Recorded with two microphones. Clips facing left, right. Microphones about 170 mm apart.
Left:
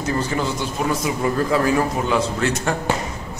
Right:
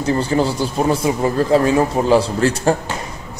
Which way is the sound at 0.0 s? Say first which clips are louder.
Right 5 dB; 30° right (ahead or behind).